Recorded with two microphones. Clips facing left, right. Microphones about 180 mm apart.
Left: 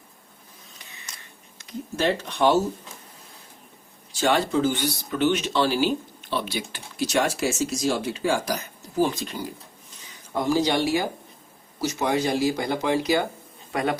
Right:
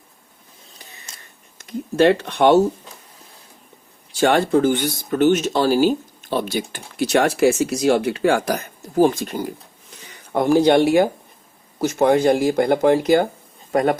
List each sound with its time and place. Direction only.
0.8 s a sound: 35° right (ahead or behind)
1.5 s speech: 60° right (ahead or behind)
4.2 s speech: 55° right (ahead or behind)